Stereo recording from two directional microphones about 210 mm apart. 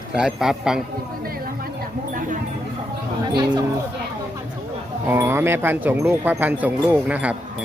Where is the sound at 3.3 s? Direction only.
20° right (ahead or behind).